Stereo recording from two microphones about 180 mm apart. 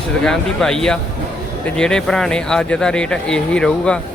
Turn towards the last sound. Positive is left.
turn(degrees=5)  # may be behind; listen again after turning